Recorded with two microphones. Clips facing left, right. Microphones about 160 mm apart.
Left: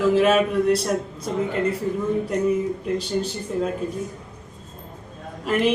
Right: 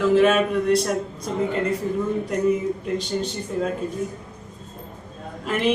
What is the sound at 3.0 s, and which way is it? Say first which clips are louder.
Speech: left 1 dB; 5° left (ahead or behind).